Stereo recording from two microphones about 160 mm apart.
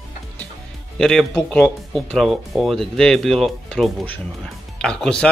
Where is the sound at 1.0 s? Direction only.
5° left (ahead or behind).